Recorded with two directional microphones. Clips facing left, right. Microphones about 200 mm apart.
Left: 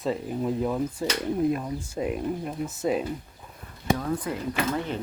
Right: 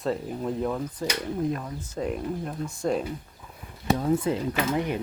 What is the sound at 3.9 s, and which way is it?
Speech, 25° right (ahead or behind).